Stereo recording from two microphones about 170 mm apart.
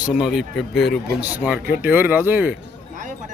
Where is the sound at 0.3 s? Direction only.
Centre (ahead or behind).